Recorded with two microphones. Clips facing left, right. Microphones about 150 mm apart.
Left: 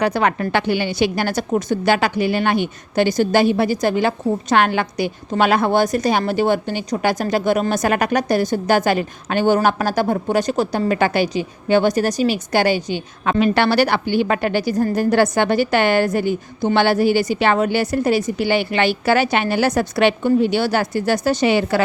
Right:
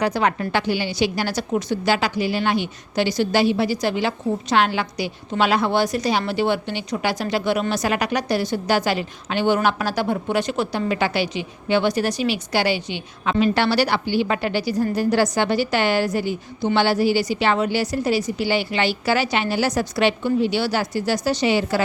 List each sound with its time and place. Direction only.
0.0 s a woman's voice: 60° left (ahead or behind)
13.4 s a woman's voice: 60° left (ahead or behind)